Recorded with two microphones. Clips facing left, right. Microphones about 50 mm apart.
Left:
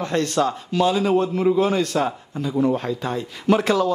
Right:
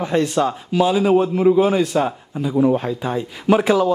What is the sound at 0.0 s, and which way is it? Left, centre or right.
A man's voice, centre.